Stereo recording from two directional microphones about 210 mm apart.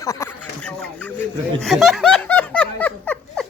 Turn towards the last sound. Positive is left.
turn(degrees=5)  # may be behind; listen again after turning